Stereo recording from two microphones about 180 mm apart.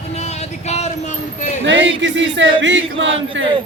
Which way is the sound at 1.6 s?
90° right.